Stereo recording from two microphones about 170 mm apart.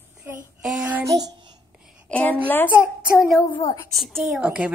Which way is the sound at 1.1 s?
20° right (ahead or behind).